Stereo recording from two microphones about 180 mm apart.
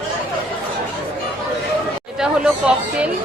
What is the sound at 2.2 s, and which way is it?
Speech, 5° right (ahead or behind).